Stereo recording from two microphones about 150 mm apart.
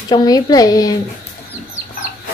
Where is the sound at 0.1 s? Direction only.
25° left (ahead or behind).